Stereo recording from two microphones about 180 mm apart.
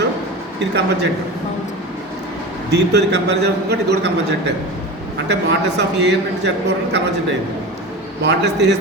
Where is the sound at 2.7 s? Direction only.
70° right (ahead or behind).